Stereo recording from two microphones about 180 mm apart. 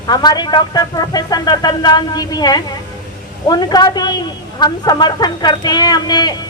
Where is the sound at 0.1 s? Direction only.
20° left (ahead or behind).